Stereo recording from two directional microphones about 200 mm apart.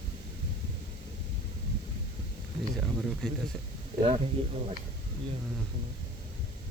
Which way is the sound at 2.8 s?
5° right (ahead or behind).